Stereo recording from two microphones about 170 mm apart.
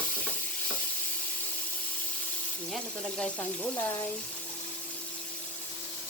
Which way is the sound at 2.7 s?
5° left (ahead or behind).